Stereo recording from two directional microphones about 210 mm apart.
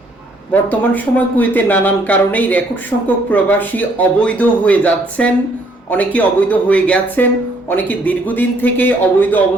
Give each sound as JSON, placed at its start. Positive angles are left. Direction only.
{"t": 0.5, "sound": "speech", "side_deg": 10}